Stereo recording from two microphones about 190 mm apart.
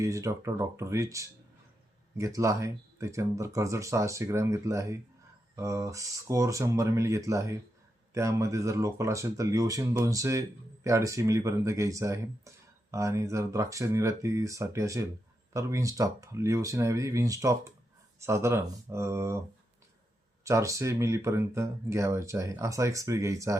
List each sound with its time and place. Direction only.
0.0 s speech: 15° right (ahead or behind)
20.4 s speech: 15° right (ahead or behind)